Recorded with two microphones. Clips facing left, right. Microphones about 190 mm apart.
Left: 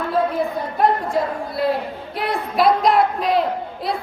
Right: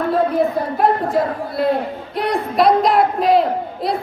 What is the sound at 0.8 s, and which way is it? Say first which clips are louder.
A woman's voice: right 1 dB; centre (ahead or behind).